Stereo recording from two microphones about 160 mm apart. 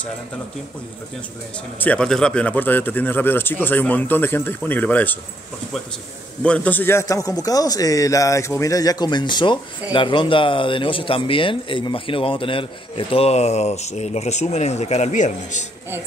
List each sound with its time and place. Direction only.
1.8 s speech: 5° left (ahead or behind)
6.4 s a man's voice: 10° left (ahead or behind); by 15.6 s 50° left (ahead or behind)